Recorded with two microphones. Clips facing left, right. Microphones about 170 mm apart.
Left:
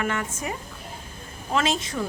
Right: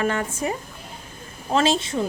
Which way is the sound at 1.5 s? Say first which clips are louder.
Right 4 dB; 30° right (ahead or behind).